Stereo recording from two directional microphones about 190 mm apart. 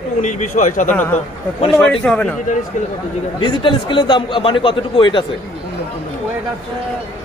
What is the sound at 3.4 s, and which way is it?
A man's voice, 25° left (ahead or behind).